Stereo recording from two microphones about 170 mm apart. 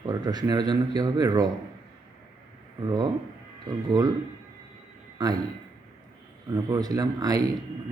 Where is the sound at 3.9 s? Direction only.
25° right (ahead or behind).